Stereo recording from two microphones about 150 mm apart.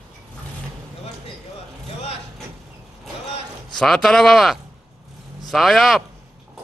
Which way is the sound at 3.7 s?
Centre (ahead or behind).